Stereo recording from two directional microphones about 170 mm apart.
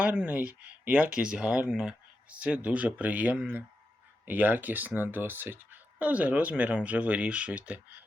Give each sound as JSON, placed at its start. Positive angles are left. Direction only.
{"t": 0.0, "sound": "speech", "side_deg": -10}